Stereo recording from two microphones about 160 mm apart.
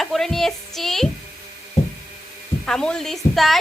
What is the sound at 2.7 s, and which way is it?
Speech, 5° left (ahead or behind).